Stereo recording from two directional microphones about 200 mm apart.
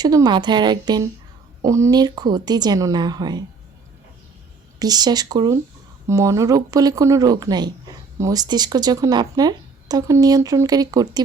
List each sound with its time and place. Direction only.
0.0 s speech: 20° right (ahead or behind)
4.8 s speech: 20° right (ahead or behind)